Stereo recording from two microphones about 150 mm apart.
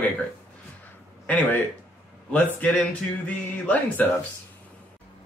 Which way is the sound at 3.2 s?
10° left (ahead or behind).